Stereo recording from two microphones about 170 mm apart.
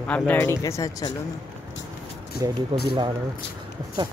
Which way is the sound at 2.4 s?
25° right (ahead or behind).